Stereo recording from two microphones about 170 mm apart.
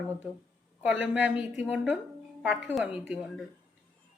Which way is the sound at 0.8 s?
5° right (ahead or behind).